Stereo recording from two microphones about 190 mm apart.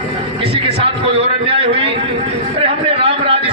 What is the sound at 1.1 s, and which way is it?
Speech, 30° right (ahead or behind).